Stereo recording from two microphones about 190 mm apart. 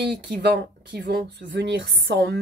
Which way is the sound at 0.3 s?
60° right (ahead or behind).